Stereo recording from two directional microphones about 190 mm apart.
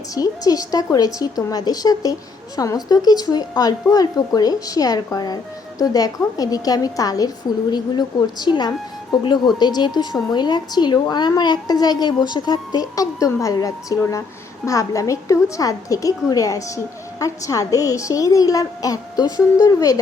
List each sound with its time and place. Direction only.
0.1 s a woman's voice: 20° left (ahead or behind)